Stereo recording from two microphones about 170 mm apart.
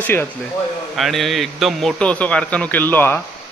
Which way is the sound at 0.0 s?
10° left (ahead or behind).